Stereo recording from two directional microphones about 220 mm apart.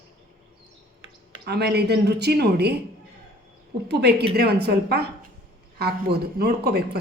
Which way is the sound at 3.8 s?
50° right (ahead or behind).